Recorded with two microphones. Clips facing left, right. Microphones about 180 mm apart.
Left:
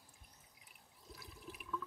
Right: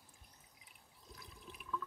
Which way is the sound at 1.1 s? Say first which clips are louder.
Left 2 dB; centre (ahead or behind).